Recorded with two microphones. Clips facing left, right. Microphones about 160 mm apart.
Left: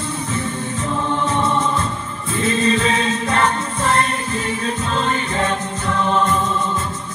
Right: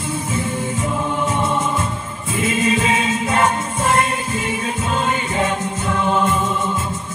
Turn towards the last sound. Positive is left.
turn(degrees=-10)  # may be behind; listen again after turning